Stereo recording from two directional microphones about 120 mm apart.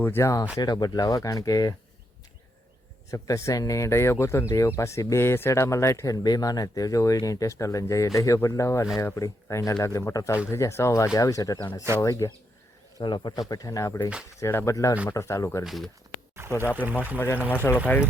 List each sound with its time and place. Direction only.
0.0 s speech: 20° left (ahead or behind)
3.1 s speech: 25° left (ahead or behind)
13.0 s speech: 40° left (ahead or behind)
15.6 s speech: centre (ahead or behind)
16.3 s a sound: 20° right (ahead or behind)
16.7 s speech: 15° right (ahead or behind)
17.5 s speech: 15° left (ahead or behind)